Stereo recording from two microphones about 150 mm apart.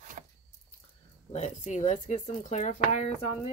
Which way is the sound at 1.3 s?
50° left (ahead or behind).